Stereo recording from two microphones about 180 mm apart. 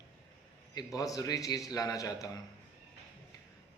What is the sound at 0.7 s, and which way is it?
Speech, 20° left (ahead or behind).